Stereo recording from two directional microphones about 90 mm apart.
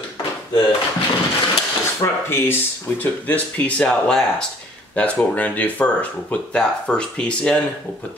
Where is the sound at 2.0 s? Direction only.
25° left (ahead or behind).